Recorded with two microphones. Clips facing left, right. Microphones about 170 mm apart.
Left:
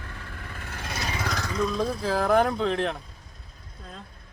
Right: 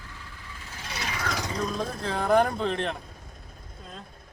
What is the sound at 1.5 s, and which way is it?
Speech, 40° right (ahead or behind).